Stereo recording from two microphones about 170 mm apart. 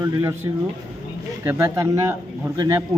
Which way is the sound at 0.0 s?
15° right (ahead or behind).